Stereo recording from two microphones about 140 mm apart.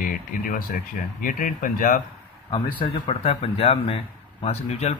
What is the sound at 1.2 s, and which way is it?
Speech, 75° left (ahead or behind).